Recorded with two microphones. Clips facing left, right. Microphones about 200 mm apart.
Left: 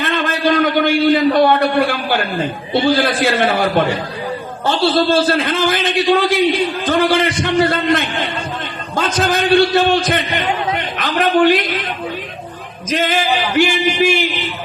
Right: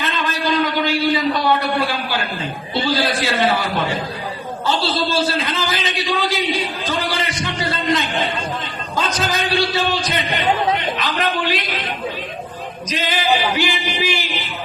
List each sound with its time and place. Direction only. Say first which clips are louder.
0.0 s a man's voice: left 5 dB; 55° left (ahead or behind)
10.8 s a sound: left 3 dB; 50° left (ahead or behind)
12.9 s a man's voice: left 3 dB; 50° left (ahead or behind)